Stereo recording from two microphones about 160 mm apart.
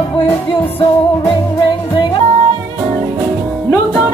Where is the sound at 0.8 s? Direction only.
20° left (ahead or behind).